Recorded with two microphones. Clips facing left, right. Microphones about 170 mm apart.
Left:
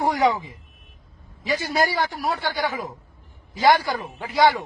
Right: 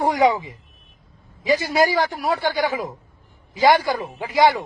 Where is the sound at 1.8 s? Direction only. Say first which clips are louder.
Right 4 dB; 20° right (ahead or behind).